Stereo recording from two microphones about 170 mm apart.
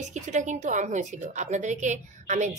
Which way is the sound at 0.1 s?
45° right (ahead or behind).